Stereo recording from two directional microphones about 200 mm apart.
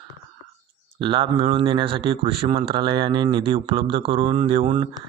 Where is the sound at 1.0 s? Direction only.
25° right (ahead or behind).